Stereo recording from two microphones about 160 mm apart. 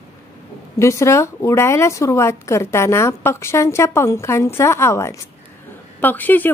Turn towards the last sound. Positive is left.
turn(degrees=10)  # may be behind; listen again after turning